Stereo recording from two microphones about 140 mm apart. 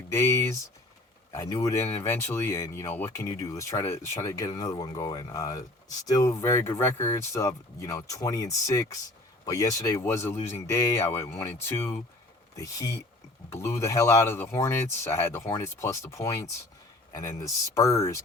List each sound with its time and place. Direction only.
0.1 s speech: 20° left (ahead or behind)
12.5 s speech: 25° left (ahead or behind)